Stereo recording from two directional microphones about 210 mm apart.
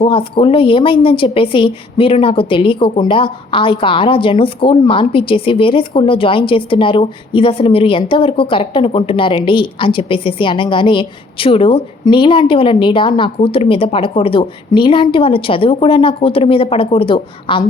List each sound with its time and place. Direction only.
0.0 s a woman's voice: 25° left (ahead or behind)